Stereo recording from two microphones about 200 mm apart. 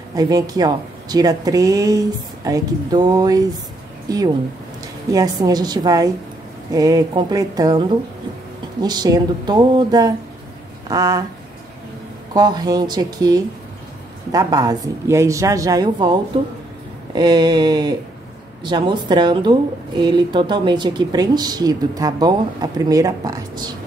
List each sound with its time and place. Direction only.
0.1 s speech: 20° right (ahead or behind)
12.4 s speech: 20° right (ahead or behind)